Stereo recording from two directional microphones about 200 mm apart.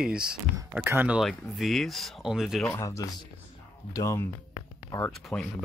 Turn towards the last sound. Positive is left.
turn(degrees=0)  # may be behind; listen again after turning